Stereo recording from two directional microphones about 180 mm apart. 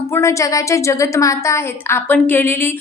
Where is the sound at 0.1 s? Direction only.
15° left (ahead or behind).